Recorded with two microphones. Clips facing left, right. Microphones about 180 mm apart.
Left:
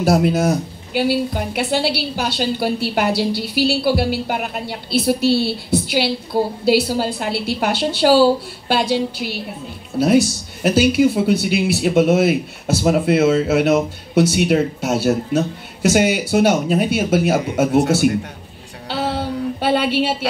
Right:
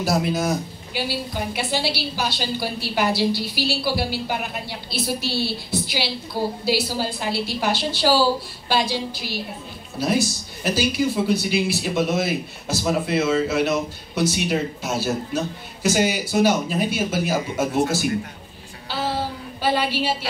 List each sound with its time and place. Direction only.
0.0 s a woman's voice: 60° left (ahead or behind)
10.6 s a woman's voice: 65° left (ahead or behind)
18.9 s a sound: 65° left (ahead or behind)